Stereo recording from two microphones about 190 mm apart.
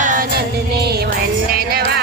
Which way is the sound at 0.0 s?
45° right (ahead or behind).